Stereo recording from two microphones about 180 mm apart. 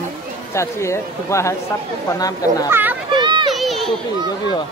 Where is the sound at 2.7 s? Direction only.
10° right (ahead or behind).